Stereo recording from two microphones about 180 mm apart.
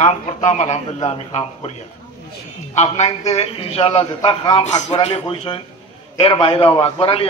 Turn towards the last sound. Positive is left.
turn(degrees=30)  # may be behind; listen again after turning